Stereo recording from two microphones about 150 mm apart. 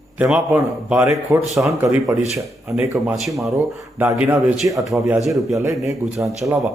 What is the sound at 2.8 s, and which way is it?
Speech, 20° right (ahead or behind).